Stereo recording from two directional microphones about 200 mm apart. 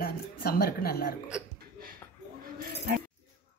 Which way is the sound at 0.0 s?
50° left (ahead or behind).